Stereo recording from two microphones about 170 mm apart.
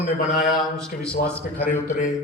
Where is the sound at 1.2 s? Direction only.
10° left (ahead or behind).